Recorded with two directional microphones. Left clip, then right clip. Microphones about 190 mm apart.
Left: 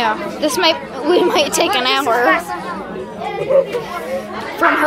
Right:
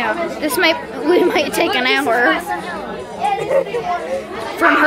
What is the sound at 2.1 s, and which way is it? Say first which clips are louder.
Speech: left 1 dB; 25° right (ahead or behind).